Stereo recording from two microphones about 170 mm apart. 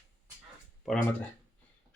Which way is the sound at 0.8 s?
5° left (ahead or behind).